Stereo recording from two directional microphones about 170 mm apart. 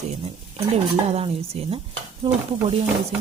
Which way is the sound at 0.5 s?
35° right (ahead or behind).